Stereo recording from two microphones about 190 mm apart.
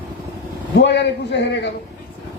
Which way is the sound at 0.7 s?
70° left (ahead or behind).